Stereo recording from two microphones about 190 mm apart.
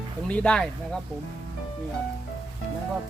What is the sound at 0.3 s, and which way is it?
Speech, 5° left (ahead or behind).